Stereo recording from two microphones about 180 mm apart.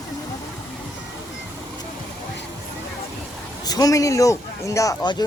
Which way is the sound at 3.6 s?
20° left (ahead or behind).